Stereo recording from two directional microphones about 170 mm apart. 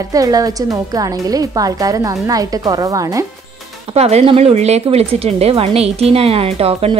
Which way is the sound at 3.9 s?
40° right (ahead or behind).